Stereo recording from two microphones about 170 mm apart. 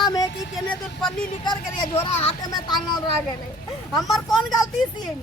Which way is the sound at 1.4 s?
25° left (ahead or behind).